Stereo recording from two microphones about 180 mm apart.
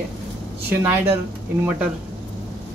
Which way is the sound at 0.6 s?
10° right (ahead or behind).